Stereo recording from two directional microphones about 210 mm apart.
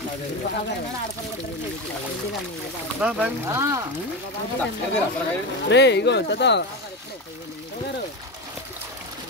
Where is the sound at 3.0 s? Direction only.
10° right (ahead or behind).